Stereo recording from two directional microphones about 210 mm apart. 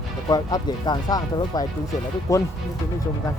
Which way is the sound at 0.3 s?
20° left (ahead or behind).